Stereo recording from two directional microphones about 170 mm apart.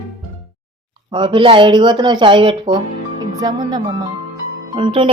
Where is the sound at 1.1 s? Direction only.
30° right (ahead or behind).